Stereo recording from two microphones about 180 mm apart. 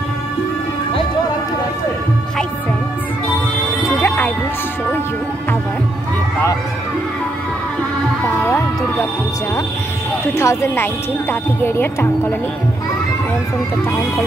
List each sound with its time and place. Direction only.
4.0 s music: 15° left (ahead or behind)
10.3 s speech: 15° left (ahead or behind)